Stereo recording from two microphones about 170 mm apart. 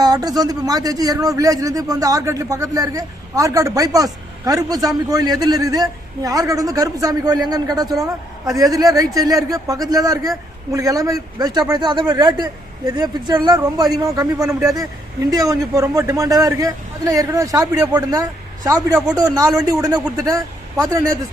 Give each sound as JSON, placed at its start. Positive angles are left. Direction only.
{"t": 0.0, "sound": "a man's voice", "side_deg": -20}